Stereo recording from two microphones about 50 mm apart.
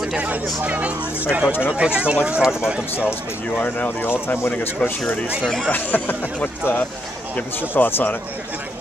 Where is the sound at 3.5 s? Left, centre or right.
Left.